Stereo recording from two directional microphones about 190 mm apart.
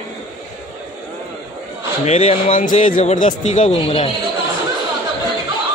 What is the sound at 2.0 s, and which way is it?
Speech, 35° left (ahead or behind).